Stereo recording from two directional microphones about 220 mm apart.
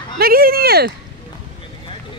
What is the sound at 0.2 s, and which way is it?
Speech, 45° right (ahead or behind).